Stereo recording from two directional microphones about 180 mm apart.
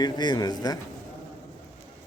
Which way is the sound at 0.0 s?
25° left (ahead or behind).